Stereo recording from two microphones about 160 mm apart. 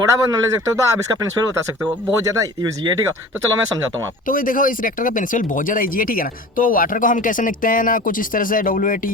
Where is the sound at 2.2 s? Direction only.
20° right (ahead or behind).